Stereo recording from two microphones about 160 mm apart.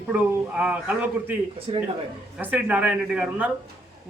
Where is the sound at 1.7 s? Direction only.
35° right (ahead or behind).